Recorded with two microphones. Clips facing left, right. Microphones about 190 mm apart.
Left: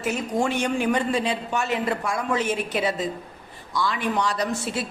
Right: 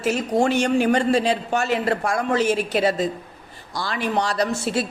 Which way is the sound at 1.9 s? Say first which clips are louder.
Right 4 dB; 40° right (ahead or behind).